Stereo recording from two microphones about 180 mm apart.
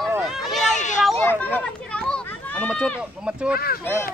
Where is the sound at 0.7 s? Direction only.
40° left (ahead or behind).